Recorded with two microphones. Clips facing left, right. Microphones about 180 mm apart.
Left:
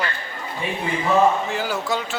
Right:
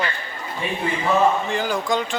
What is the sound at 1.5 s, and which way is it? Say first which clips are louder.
Speech: right 2 dB; 5° left (ahead or behind).